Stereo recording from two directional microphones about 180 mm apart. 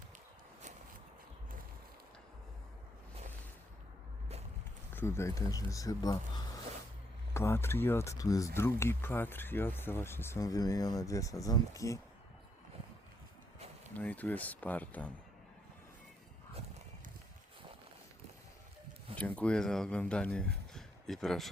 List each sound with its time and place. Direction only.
4.9 s speech: 15° left (ahead or behind)
13.9 s speech: 10° left (ahead or behind)
19.1 s speech: 5° left (ahead or behind)
20.7 s a sound: centre (ahead or behind)